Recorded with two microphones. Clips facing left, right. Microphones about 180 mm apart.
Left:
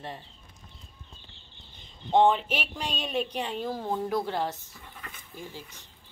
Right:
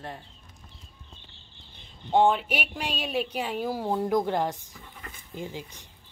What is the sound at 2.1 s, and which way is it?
Speech, 5° right (ahead or behind).